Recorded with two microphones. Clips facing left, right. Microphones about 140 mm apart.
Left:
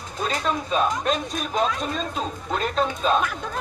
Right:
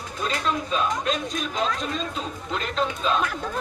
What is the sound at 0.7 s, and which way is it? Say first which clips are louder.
Speech: left 5 dB; 45° left (ahead or behind).